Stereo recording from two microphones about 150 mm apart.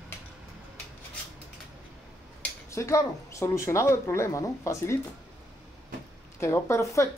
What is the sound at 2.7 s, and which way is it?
Speech, 20° left (ahead or behind).